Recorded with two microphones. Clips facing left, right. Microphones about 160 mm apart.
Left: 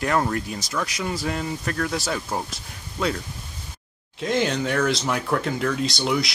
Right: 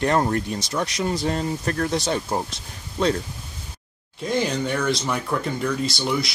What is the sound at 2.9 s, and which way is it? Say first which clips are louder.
Speech: right 4 dB; 35° right (ahead or behind).